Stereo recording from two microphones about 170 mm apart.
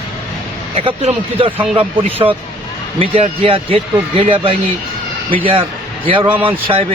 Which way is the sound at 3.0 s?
35° right (ahead or behind).